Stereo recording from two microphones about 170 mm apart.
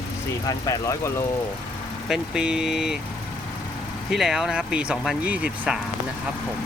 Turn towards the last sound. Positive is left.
turn(degrees=-5)  # may be behind; listen again after turning